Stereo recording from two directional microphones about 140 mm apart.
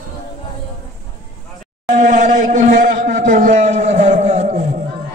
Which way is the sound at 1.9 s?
65° right (ahead or behind).